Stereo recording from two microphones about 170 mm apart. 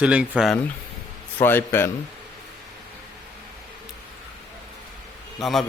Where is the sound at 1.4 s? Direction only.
10° left (ahead or behind).